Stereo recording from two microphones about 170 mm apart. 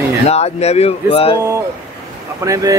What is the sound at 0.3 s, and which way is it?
Speech, 40° left (ahead or behind).